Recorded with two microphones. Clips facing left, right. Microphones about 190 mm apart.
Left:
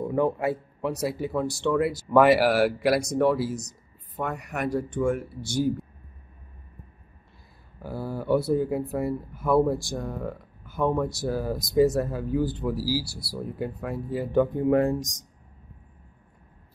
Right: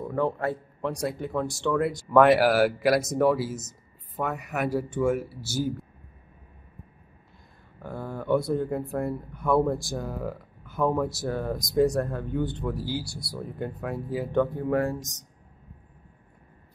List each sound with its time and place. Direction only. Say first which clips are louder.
0.0 s speech: left 3 dB; 15° left (ahead or behind); by 5.9 s 5° right (ahead or behind)
7.8 s speech: left 2 dB; 5° left (ahead or behind)
14.5 s speech: left 4 dB; 20° left (ahead or behind)